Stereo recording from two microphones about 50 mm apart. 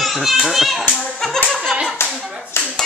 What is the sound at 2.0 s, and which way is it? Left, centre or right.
Clapping, left.